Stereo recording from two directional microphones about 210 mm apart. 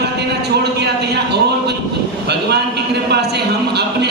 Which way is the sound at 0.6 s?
50° right (ahead or behind).